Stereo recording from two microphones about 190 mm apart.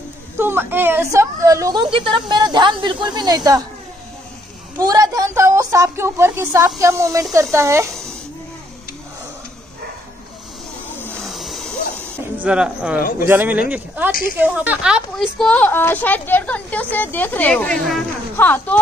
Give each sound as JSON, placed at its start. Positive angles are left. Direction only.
{"t": 0.4, "sound": "a woman's voice", "side_deg": -10}
{"t": 4.7, "sound": "a woman's voice", "side_deg": -20}
{"t": 11.2, "sound": "a sound", "side_deg": 0}
{"t": 12.4, "sound": "a woman's voice", "side_deg": -5}